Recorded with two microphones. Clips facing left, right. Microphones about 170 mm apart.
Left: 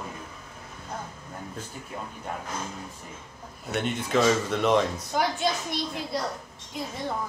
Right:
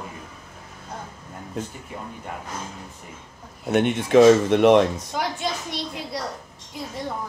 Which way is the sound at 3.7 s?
65° right (ahead or behind).